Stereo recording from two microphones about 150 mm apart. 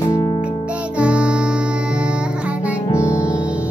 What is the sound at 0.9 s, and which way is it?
Music, 5° right (ahead or behind).